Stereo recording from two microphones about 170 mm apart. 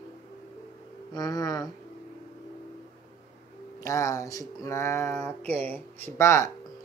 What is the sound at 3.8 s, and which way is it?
Speech, 20° left (ahead or behind).